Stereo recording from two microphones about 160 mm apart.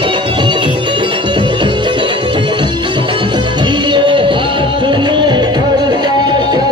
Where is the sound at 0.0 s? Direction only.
30° right (ahead or behind).